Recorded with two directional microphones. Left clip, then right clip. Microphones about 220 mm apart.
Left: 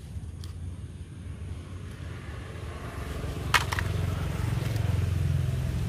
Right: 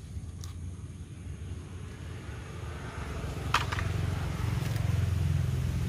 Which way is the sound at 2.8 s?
25° left (ahead or behind).